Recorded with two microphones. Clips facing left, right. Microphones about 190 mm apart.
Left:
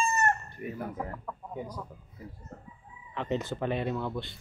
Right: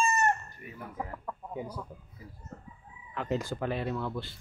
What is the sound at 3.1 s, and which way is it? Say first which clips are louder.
Speech: left 1 dB; centre (ahead or behind).